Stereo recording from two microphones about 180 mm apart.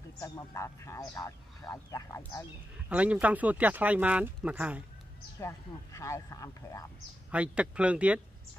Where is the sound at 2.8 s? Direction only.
5° right (ahead or behind).